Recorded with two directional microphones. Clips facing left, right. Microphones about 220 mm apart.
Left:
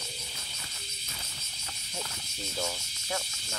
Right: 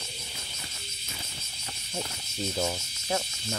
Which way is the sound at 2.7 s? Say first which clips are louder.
Right 5 dB; 40° right (ahead or behind).